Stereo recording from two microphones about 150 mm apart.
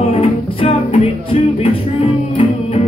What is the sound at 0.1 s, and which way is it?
Music, 40° left (ahead or behind).